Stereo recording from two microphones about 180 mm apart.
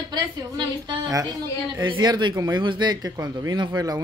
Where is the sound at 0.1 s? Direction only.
25° right (ahead or behind).